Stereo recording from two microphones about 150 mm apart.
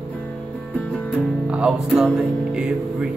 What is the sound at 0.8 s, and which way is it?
Music, 10° left (ahead or behind).